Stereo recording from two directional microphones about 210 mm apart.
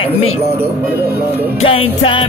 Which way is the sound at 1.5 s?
25° left (ahead or behind).